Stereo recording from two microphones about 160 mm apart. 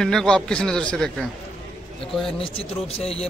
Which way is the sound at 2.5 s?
40° left (ahead or behind).